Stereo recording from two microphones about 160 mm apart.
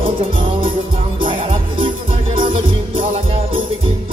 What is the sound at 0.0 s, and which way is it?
Music, 35° right (ahead or behind).